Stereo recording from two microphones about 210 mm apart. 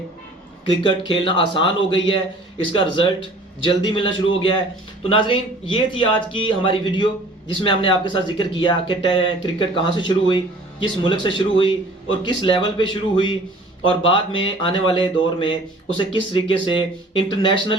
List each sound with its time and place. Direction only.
0.6 s speech: 20° left (ahead or behind)